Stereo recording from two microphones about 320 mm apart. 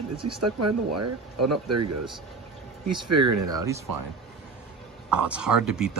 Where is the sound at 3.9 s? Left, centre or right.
Right.